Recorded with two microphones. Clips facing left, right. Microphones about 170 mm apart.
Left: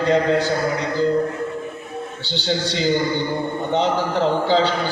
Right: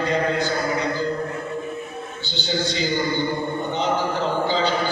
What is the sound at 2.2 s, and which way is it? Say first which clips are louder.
Speech: left 2 dB; 80° left.